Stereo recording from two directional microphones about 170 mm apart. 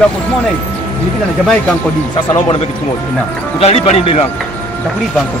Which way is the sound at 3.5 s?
35° left (ahead or behind).